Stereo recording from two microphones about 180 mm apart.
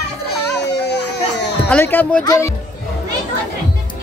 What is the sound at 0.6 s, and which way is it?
Baby cry, 70° left (ahead or behind).